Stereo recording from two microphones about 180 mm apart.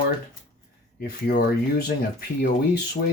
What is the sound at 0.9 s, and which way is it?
Speech, 55° left (ahead or behind).